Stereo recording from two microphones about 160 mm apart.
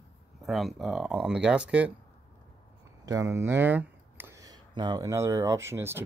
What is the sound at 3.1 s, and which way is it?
Speech, 20° right (ahead or behind).